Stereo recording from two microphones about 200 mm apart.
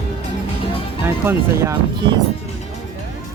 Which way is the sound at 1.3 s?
15° right (ahead or behind).